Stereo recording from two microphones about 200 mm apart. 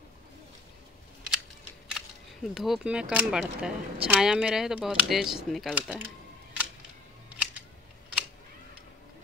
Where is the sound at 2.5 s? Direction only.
Centre (ahead or behind).